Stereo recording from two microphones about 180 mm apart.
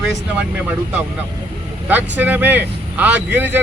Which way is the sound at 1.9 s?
10° right (ahead or behind).